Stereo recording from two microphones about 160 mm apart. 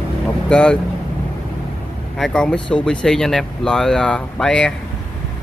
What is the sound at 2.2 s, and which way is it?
Speech, 5° left (ahead or behind).